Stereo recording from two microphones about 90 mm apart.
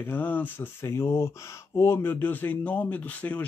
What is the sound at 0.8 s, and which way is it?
Speech, 30° left (ahead or behind).